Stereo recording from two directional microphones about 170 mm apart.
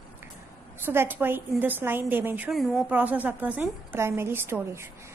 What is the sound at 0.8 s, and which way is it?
A woman's voice, 10° right (ahead or behind).